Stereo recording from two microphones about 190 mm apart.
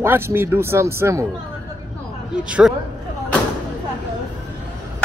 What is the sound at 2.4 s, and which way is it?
Speech, 5° right (ahead or behind).